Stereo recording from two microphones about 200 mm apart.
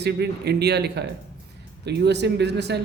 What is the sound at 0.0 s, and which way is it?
Speech, 55° right (ahead or behind).